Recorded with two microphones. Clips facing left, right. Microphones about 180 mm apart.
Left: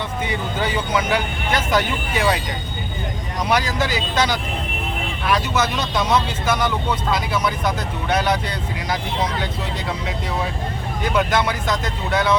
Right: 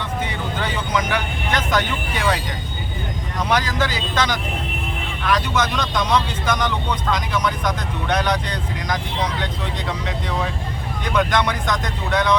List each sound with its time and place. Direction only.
0.3 s speech: 10° left (ahead or behind)
3.5 s speech: 10° left (ahead or behind)
11.0 s speech: 5° left (ahead or behind)